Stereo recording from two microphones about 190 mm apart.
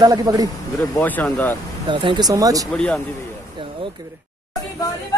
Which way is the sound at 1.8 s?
25° right (ahead or behind).